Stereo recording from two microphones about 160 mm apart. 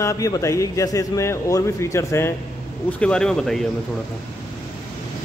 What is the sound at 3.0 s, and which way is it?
Speech, 5° left (ahead or behind).